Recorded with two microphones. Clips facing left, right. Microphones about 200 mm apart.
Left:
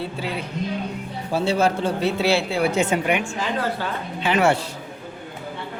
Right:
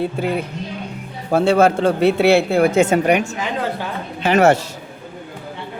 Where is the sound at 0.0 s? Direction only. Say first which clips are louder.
Right 7 dB; 50° right (ahead or behind).